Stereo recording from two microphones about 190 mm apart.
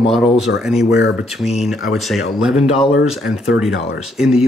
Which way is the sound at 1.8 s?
Centre (ahead or behind).